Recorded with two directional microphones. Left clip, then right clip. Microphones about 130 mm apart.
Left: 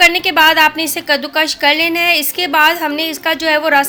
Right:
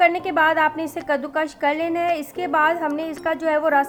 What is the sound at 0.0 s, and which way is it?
A woman's voice, 20° left (ahead or behind).